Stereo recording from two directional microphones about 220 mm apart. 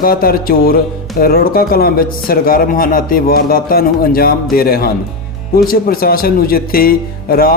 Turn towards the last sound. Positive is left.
turn(degrees=45)  # may be behind; listen again after turning